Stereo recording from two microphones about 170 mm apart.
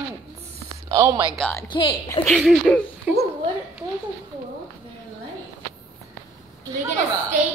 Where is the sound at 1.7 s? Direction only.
30° left (ahead or behind).